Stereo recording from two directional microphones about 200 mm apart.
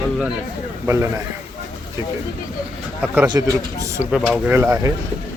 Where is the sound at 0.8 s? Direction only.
15° right (ahead or behind).